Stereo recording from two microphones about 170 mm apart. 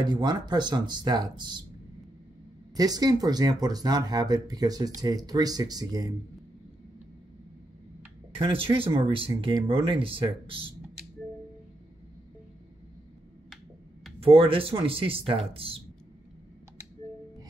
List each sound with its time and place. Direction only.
0.0 s speech: 25° right (ahead or behind)
2.7 s speech: 20° right (ahead or behind)
8.4 s speech: 30° right (ahead or behind)
14.2 s speech: 35° right (ahead or behind)